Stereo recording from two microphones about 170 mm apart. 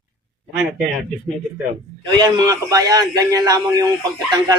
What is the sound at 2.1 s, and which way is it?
A man's voice, 20° right (ahead or behind).